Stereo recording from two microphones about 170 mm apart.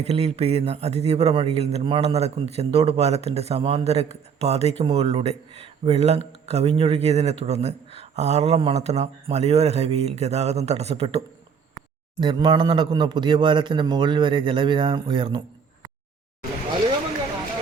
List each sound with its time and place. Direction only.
0.0 s speech: 40° right (ahead or behind)
12.2 s a man's voice: 25° right (ahead or behind)